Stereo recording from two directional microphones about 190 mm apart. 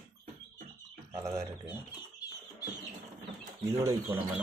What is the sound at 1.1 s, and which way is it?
Speech, 15° right (ahead or behind).